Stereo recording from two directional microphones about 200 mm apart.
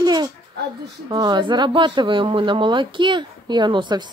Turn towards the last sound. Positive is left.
turn(degrees=-25)  # may be behind; listen again after turning